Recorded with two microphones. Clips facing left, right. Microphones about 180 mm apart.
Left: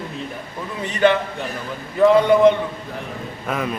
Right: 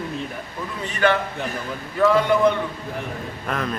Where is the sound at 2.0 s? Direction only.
20° left (ahead or behind).